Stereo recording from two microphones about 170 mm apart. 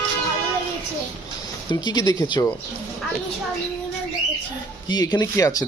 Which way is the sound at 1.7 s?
25° left (ahead or behind).